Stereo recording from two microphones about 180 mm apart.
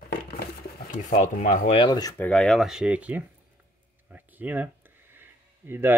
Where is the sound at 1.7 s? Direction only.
25° left (ahead or behind).